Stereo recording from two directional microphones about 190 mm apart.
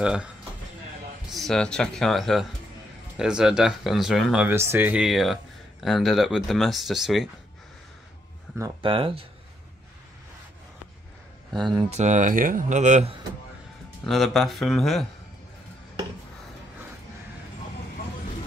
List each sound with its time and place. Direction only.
0.0 s speech: 5° right (ahead or behind)
1.3 s speech: centre (ahead or behind)
8.5 s speech: 25° right (ahead or behind)
11.9 s speech: 40° right (ahead or behind)
14.0 s speech: centre (ahead or behind)